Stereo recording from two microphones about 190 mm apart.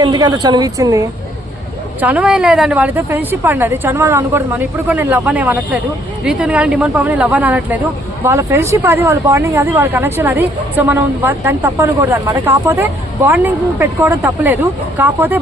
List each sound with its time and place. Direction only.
0.0 s a woman's voice: 20° right (ahead or behind)
2.0 s speech: 5° right (ahead or behind)